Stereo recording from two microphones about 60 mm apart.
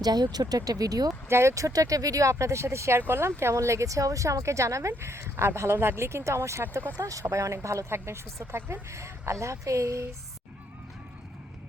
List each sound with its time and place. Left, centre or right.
0.0 s speech: right
1.3 s speech: right
7.0 s speech: right